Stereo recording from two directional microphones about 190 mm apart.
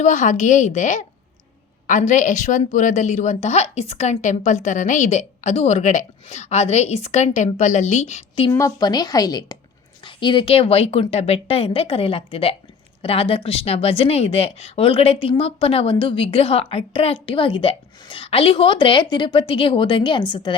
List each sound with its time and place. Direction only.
0.0 s a woman's voice: 40° left (ahead or behind)
8.4 s a woman's voice: 20° left (ahead or behind)